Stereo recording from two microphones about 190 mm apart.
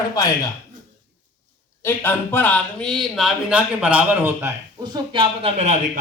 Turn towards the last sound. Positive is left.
turn(degrees=-35)  # may be behind; listen again after turning